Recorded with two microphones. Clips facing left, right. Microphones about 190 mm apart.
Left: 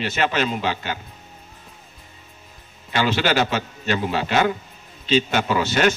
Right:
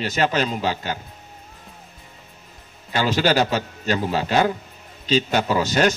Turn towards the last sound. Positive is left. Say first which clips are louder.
# even
turn(degrees=-40)  # may be behind; listen again after turning